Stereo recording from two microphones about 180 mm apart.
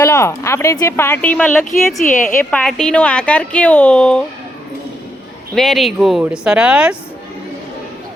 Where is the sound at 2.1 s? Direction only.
45° left (ahead or behind).